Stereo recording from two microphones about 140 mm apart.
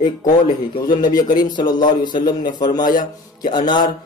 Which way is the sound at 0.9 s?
30° left (ahead or behind).